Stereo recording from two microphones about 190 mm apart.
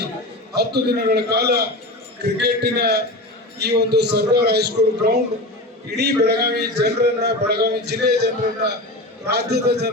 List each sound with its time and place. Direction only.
0.5 s a man's voice: 60° right (ahead or behind)